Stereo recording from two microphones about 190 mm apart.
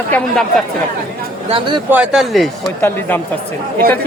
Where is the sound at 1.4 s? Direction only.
25° right (ahead or behind).